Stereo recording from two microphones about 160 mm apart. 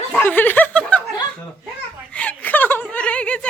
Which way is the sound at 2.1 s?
10° left (ahead or behind).